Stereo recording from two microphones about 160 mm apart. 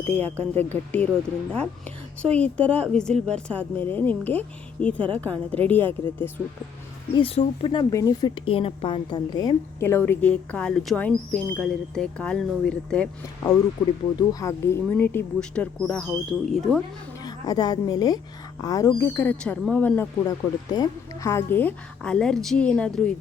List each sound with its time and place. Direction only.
0.0 s speech: 10° left (ahead or behind)
7.2 s speech: 35° left (ahead or behind); by 13.1 s 5° left (ahead or behind)
14.2 s speech: 20° left (ahead or behind); by 16.8 s centre (ahead or behind)
17.2 s a woman's voice: 25° left (ahead or behind)
20.2 s speech: 25° left (ahead or behind); by 23.1 s 5° left (ahead or behind)